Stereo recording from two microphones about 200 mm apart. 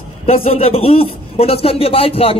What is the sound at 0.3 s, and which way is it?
A man's voice, 30° left (ahead or behind).